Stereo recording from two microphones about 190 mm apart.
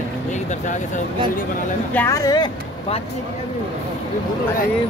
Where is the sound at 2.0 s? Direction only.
15° left (ahead or behind).